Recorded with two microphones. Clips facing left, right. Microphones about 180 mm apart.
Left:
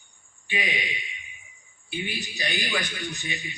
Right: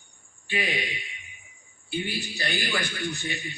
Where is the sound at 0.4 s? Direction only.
15° left (ahead or behind).